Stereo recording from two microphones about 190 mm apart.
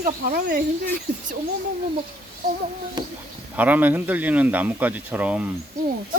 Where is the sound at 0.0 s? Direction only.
50° right (ahead or behind).